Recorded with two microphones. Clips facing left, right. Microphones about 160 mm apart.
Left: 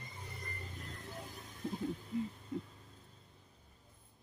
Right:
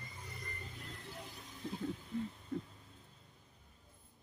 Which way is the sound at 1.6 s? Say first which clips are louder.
Left 3 dB; 45° left (ahead or behind).